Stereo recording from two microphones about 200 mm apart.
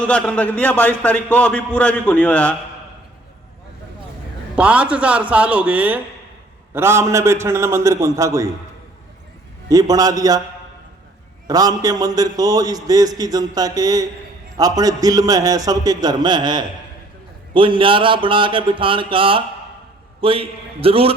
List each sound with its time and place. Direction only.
0.0 s a man's voice: 5° left (ahead or behind)
4.5 s a man's voice: 5° right (ahead or behind)
9.6 s a man's voice: 20° right (ahead or behind)
11.4 s a man's voice: 20° right (ahead or behind)